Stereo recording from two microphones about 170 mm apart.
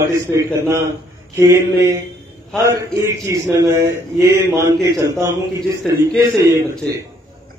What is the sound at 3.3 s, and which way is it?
A man's voice, 20° right (ahead or behind).